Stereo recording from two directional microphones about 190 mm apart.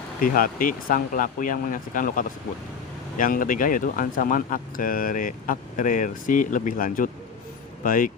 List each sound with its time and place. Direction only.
0.2 s speech: 50° left (ahead or behind)